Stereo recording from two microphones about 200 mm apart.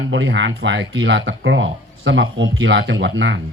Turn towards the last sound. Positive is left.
turn(degrees=-65)  # may be behind; listen again after turning